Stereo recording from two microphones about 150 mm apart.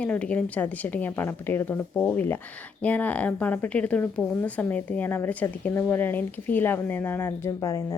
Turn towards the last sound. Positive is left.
turn(degrees=20)  # may be behind; listen again after turning